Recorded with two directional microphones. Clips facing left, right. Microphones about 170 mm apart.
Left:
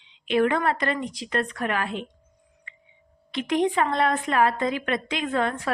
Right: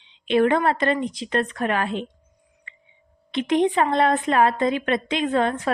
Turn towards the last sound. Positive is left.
turn(degrees=-25)  # may be behind; listen again after turning